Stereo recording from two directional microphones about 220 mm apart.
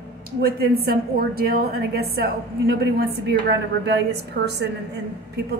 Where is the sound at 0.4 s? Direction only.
45° right (ahead or behind).